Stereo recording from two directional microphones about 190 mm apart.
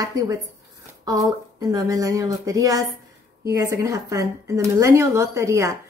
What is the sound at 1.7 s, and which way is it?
Speech, 20° right (ahead or behind).